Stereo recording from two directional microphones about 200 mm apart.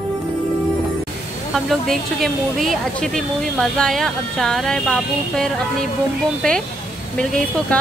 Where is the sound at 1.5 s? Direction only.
Centre (ahead or behind).